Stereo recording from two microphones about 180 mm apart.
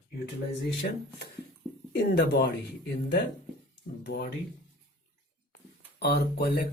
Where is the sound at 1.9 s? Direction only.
70° left (ahead or behind).